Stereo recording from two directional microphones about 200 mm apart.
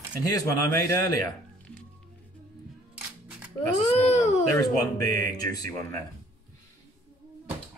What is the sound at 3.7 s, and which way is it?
Speech, 35° left (ahead or behind).